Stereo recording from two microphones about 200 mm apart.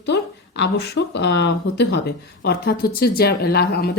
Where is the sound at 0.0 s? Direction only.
60° left (ahead or behind).